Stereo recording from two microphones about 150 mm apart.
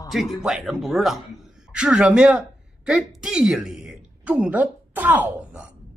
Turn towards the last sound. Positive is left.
turn(degrees=-10)  # may be behind; listen again after turning